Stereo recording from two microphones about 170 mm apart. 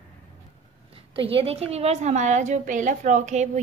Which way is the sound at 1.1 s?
30° right (ahead or behind).